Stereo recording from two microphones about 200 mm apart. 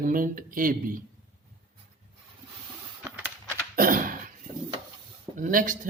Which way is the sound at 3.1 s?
10° right (ahead or behind).